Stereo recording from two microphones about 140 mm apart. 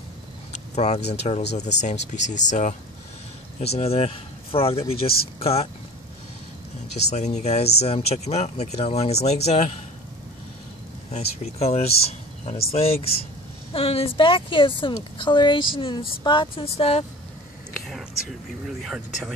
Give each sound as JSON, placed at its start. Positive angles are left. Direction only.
{"t": 0.5, "sound": "speech", "side_deg": 50}
{"t": 3.6, "sound": "speech", "side_deg": 45}
{"t": 7.1, "sound": "speech", "side_deg": 55}
{"t": 11.1, "sound": "speech", "side_deg": 50}
{"t": 18.7, "sound": "speech", "side_deg": 0}